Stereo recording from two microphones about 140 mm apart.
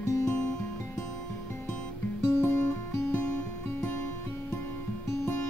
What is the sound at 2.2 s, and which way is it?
Music, 20° left (ahead or behind).